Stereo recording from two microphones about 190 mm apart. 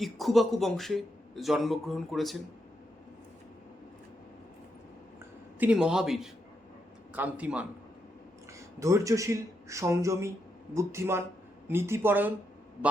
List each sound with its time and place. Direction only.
0.0 s a man's voice: centre (ahead or behind)
5.5 s a man's voice: 5° right (ahead or behind)